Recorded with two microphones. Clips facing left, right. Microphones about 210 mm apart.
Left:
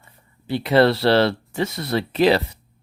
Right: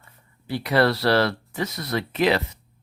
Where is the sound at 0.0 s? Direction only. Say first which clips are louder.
Left 4 dB; 25° left (ahead or behind).